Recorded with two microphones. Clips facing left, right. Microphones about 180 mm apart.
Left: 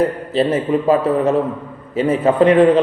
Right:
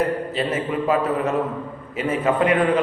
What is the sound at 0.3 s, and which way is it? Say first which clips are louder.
A man's voice: left 12 dB; 30° left (ahead or behind).